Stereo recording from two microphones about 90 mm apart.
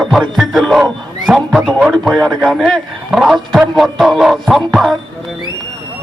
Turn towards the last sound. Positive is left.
turn(degrees=0)  # may be behind; listen again after turning